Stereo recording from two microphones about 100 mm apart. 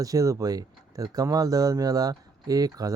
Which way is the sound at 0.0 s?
35° right (ahead or behind).